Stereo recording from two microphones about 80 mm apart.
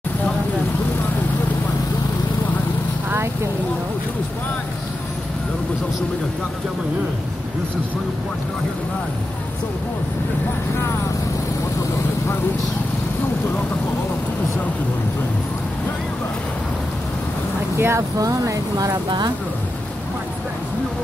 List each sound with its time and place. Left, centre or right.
17.7 s speech: right
18.2 s speech: right
19.0 s speech: right